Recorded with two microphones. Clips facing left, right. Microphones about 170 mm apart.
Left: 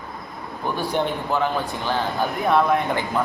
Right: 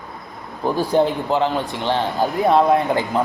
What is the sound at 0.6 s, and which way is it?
Speech, 35° right (ahead or behind).